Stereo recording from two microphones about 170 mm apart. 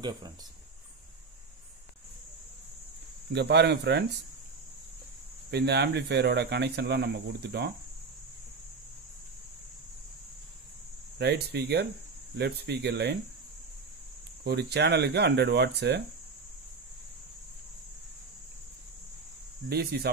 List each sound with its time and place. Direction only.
3.3 s speech: 90° right
5.5 s speech: 75° right (ahead or behind)
11.1 s speech: 75° right (ahead or behind)
14.4 s speech: 75° right (ahead or behind)
19.7 s speech: 70° right (ahead or behind)